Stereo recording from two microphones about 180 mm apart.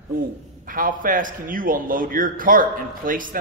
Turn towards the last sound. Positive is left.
turn(degrees=-50)  # may be behind; listen again after turning